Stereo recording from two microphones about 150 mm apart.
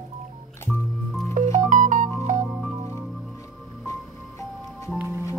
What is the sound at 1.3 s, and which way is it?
Music, 55° right (ahead or behind).